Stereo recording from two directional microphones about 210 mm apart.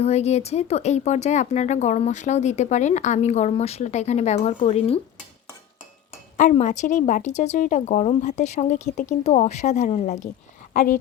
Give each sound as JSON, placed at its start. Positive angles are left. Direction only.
{"t": 0.0, "sound": "speech", "side_deg": 30}
{"t": 6.3, "sound": "speech", "side_deg": 35}